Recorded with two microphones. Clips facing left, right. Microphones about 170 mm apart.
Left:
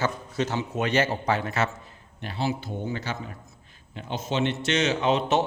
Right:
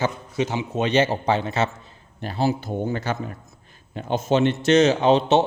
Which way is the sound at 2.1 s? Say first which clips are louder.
Right 6 dB; 40° right (ahead or behind).